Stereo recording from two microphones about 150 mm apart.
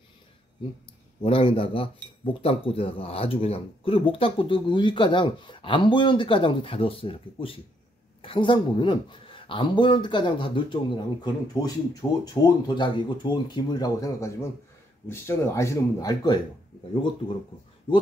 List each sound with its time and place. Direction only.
1.2 s speech: 35° left (ahead or behind)
12.0 s speech: 15° left (ahead or behind)
12.4 s speech: 30° left (ahead or behind)